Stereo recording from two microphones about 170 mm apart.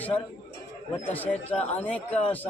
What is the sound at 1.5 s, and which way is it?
Speech, 40° left (ahead or behind).